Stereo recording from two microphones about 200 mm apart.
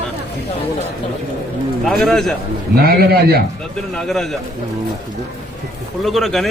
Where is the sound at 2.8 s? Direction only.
50° right (ahead or behind).